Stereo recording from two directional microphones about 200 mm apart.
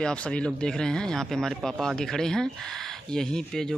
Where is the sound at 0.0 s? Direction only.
5° left (ahead or behind).